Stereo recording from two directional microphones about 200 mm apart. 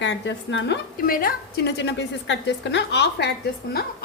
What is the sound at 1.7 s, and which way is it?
Sizzle, 60° left (ahead or behind).